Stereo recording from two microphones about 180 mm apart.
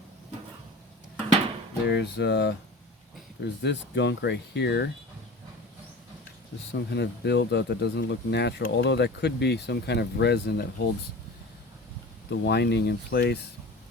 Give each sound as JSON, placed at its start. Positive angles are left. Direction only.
{"t": 1.9, "sound": "speech", "side_deg": 70}
{"t": 6.7, "sound": "speech", "side_deg": 70}
{"t": 12.3, "sound": "speech", "side_deg": 70}